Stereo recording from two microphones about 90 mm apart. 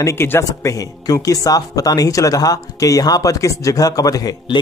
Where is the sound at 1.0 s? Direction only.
40° left (ahead or behind).